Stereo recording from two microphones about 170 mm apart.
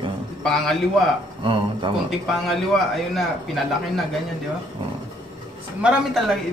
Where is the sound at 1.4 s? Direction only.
30° right (ahead or behind).